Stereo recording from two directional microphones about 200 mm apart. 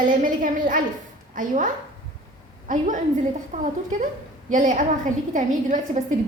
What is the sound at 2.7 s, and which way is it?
A woman's voice, 40° right (ahead or behind).